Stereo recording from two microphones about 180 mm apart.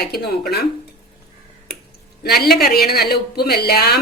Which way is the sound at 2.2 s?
60° left (ahead or behind).